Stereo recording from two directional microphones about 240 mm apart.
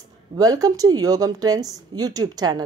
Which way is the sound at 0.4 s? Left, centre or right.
Centre.